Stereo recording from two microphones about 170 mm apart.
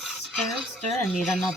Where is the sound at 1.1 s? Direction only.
Centre (ahead or behind).